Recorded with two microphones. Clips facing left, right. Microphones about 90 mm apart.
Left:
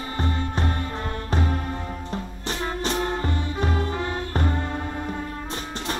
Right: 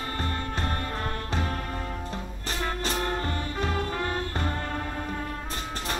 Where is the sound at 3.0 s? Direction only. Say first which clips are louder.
Left 3 dB; 20° left (ahead or behind).